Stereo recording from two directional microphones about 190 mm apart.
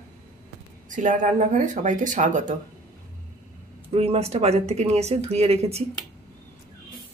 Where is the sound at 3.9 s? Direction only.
30° right (ahead or behind).